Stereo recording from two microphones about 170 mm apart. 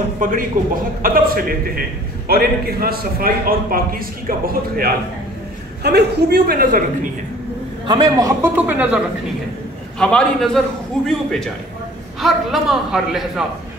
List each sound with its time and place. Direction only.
0.2 s a man's voice: 55° right (ahead or behind)
5.8 s a man's voice: 75° right (ahead or behind); by 7.1 s 55° right (ahead or behind)
7.8 s a man's voice: 25° right (ahead or behind); by 9.0 s 10° right (ahead or behind)
9.9 s a man's voice: 5° left (ahead or behind)